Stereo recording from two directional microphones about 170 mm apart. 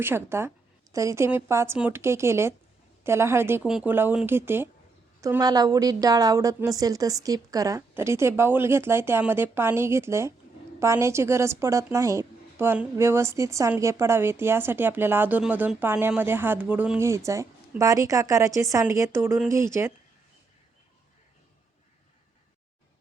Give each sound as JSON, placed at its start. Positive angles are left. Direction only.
{"t": 0.0, "sound": "a woman's voice", "side_deg": -15}